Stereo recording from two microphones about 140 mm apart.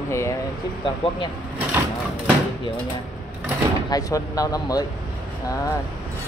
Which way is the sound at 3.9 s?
25° left (ahead or behind).